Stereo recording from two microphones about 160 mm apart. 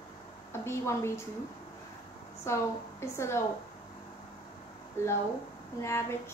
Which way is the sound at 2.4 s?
15° left (ahead or behind).